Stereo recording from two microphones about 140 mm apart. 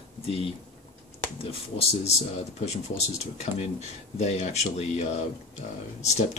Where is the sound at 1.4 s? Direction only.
45° left (ahead or behind).